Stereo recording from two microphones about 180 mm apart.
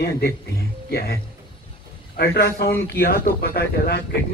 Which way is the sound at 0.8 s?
60° left (ahead or behind).